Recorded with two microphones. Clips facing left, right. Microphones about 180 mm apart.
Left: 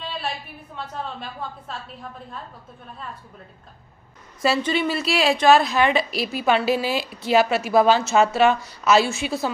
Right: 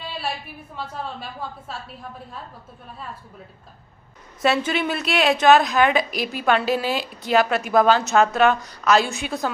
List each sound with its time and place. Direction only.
0.0 s a sound: 5° right (ahead or behind)
0.7 s a woman's voice: 5° right (ahead or behind)
4.4 s a woman's voice: centre (ahead or behind)
6.0 s a woman's voice: 50° right (ahead or behind)
7.2 s a woman's voice: 5° left (ahead or behind)